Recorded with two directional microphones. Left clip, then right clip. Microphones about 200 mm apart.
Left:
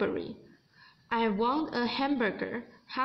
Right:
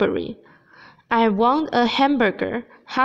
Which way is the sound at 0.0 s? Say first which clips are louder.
Right 10 dB; 50° right (ahead or behind).